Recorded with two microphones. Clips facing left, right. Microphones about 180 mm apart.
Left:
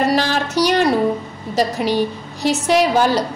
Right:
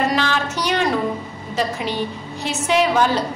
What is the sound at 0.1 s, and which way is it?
Music, 40° left (ahead or behind).